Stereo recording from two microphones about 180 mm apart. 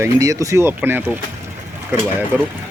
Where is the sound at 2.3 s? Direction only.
5° right (ahead or behind).